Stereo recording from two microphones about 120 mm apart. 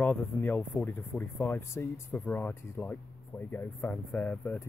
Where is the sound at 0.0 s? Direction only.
15° left (ahead or behind).